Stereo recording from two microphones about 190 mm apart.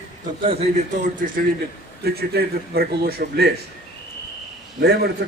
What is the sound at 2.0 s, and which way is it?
A man's voice, 55° right (ahead or behind).